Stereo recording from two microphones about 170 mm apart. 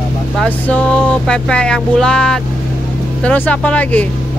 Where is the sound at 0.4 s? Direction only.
5° left (ahead or behind).